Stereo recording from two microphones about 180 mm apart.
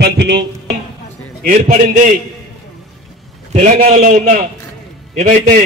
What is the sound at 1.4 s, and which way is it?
Speech, 45° right (ahead or behind).